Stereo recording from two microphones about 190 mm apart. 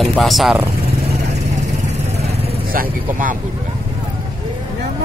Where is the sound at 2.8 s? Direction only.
45° right (ahead or behind).